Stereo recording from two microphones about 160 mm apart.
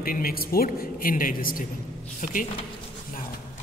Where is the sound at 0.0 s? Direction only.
65° left (ahead or behind).